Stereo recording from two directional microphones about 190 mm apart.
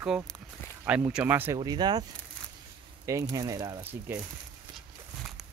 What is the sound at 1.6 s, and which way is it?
Speech, 20° right (ahead or behind).